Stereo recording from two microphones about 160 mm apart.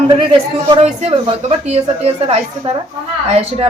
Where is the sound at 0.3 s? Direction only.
35° right (ahead or behind).